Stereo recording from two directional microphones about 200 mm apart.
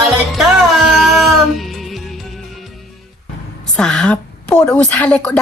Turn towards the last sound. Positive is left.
turn(degrees=5)  # may be behind; listen again after turning